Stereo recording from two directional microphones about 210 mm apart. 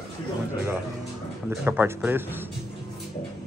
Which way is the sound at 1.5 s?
10° right (ahead or behind).